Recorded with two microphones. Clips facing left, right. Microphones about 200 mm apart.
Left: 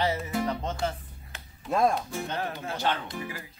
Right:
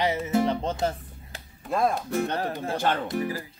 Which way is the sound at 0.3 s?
30° right (ahead or behind).